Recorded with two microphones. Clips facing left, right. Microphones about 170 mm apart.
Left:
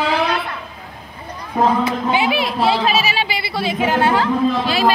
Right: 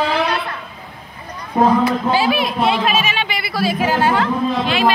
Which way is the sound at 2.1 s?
25° left (ahead or behind).